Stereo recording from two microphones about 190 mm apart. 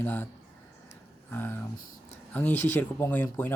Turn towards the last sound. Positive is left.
turn(degrees=10)  # may be behind; listen again after turning